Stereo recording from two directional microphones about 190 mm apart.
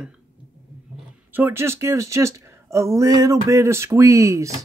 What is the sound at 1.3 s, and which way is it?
Speech, 10° right (ahead or behind).